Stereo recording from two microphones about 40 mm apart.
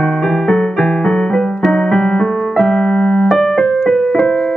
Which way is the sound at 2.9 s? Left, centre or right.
Centre.